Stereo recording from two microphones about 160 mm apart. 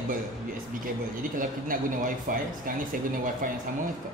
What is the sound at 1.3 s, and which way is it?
A man's voice, 60° right (ahead or behind).